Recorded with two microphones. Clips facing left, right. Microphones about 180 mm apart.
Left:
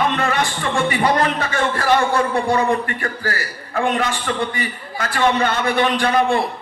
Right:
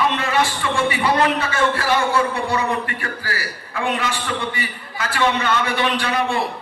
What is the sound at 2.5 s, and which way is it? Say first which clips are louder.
A man's voice: left 4 dB; 45° left (ahead or behind).